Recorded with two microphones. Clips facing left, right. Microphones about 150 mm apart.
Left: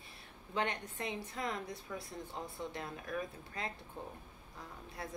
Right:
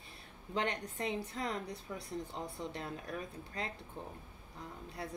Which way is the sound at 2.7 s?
35° right (ahead or behind).